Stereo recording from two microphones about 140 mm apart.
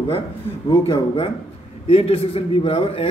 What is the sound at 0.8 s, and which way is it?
A man's voice, 40° left (ahead or behind).